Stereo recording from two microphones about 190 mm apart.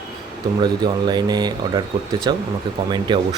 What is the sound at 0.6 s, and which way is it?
Speech, 20° right (ahead or behind).